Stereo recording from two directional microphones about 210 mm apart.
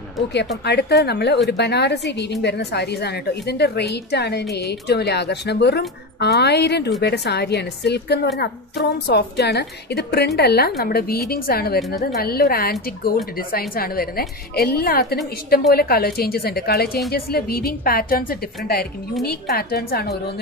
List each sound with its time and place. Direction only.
0.7 s a woman's voice: 50° left (ahead or behind)